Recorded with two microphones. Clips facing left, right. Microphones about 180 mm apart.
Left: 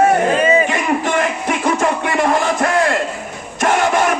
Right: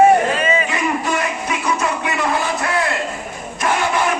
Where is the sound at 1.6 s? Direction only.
50° left (ahead or behind).